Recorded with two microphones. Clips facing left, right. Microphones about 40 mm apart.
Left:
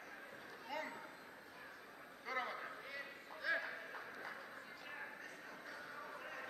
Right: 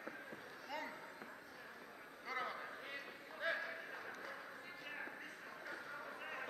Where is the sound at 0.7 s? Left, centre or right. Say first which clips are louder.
Left 1 dB; centre.